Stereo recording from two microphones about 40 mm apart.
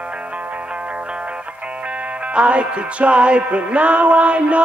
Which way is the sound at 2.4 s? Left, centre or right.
Right.